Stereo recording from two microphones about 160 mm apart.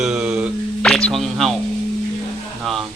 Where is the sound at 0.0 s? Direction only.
5° right (ahead or behind).